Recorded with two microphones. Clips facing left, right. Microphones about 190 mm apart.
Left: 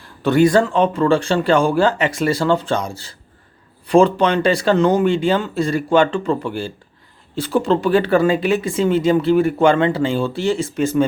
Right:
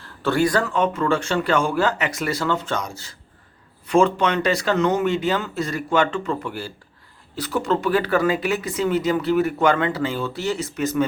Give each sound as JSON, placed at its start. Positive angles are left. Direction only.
{"t": 0.0, "sound": "speech", "side_deg": 15}